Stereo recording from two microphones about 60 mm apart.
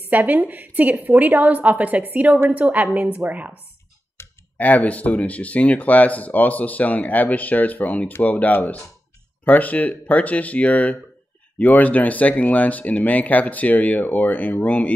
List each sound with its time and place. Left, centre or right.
0.0 s a woman's voice: right
4.2 s clicking: left
4.6 s speech: left